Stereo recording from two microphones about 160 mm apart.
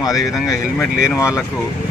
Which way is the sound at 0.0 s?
Centre (ahead or behind).